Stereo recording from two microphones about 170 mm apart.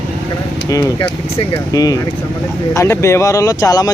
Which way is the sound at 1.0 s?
30° left (ahead or behind).